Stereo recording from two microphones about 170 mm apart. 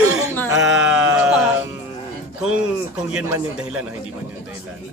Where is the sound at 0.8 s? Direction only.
5° right (ahead or behind).